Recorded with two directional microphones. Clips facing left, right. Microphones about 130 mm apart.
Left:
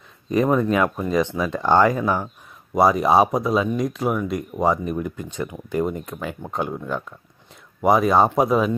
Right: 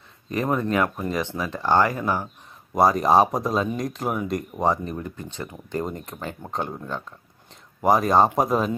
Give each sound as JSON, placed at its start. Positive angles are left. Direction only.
{"t": 0.3, "sound": "speech", "side_deg": 20}
{"t": 2.7, "sound": "speech", "side_deg": 5}